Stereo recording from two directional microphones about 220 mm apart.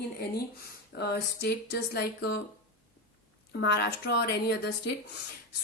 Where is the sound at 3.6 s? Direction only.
50° left (ahead or behind).